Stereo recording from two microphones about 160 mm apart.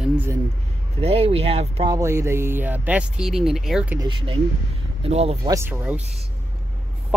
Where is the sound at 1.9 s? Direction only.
15° right (ahead or behind).